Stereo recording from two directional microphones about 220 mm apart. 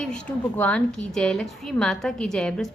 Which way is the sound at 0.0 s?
5° left (ahead or behind).